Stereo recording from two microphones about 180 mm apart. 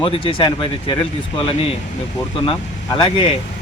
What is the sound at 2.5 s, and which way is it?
Speech, 30° left (ahead or behind).